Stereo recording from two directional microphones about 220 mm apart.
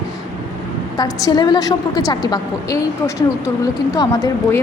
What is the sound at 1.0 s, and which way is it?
A woman's voice, 20° left (ahead or behind).